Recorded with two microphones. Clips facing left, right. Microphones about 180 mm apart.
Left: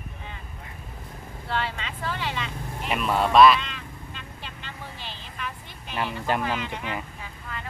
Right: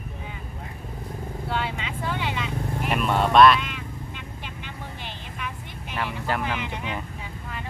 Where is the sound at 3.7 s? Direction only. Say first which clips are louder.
Right 4 dB; 10° right (ahead or behind).